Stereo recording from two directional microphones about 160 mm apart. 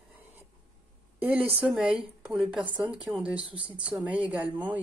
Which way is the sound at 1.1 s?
10° right (ahead or behind).